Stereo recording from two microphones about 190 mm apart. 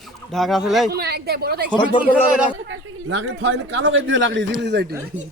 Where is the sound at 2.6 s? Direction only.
85° right.